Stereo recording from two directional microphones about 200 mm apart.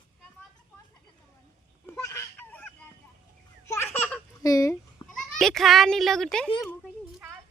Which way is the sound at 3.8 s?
5° left (ahead or behind).